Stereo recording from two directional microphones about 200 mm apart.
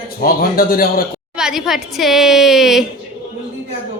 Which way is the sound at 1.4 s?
Centre (ahead or behind).